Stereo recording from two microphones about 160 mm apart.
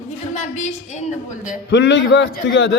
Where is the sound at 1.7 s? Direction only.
90° left.